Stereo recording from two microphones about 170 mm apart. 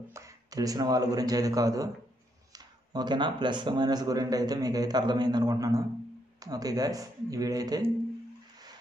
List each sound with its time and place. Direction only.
0.1 s speech: 20° right (ahead or behind)